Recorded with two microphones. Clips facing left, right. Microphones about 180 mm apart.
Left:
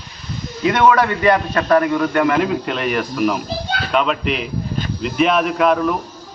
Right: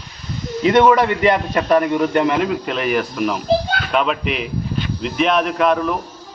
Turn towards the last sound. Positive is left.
turn(degrees=0)  # may be behind; listen again after turning